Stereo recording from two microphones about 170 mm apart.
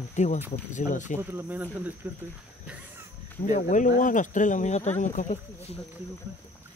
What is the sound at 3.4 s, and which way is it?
Speech, 45° left (ahead or behind).